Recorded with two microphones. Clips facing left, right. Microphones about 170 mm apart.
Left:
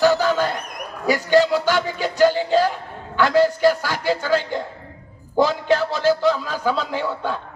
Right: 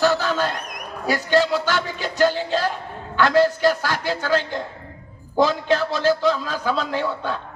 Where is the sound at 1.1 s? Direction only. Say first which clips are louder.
Left 3 dB; 15° left (ahead or behind).